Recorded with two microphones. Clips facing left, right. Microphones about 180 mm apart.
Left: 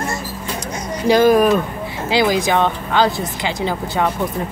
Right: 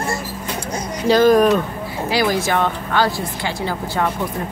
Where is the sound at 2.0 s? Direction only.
20° left (ahead or behind).